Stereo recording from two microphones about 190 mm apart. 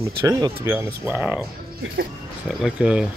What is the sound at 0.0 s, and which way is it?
Speech, 15° right (ahead or behind).